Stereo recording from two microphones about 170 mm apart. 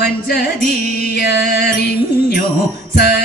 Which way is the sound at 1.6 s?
60° left (ahead or behind).